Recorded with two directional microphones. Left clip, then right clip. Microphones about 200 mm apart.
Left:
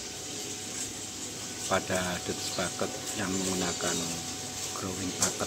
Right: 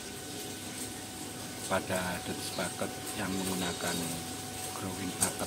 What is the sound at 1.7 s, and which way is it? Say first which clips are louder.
Speech: left 3 dB; 20° left (ahead or behind).